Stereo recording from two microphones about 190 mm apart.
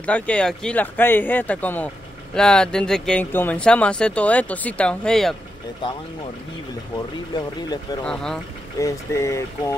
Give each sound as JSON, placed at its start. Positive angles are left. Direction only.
{"t": 0.0, "sound": "speech", "side_deg": 5}
{"t": 8.0, "sound": "speech", "side_deg": 5}
{"t": 8.7, "sound": "speech", "side_deg": 15}